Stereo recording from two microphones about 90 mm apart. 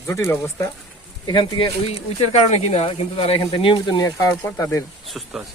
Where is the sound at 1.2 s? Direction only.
60° left (ahead or behind).